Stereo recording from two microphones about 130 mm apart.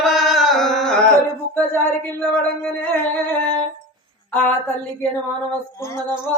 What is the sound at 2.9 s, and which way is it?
Music, 15° left (ahead or behind).